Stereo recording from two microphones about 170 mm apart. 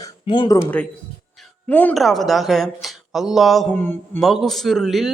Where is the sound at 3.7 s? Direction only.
10° left (ahead or behind).